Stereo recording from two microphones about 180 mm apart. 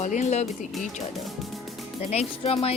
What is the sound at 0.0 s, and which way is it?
Speech, 40° left (ahead or behind).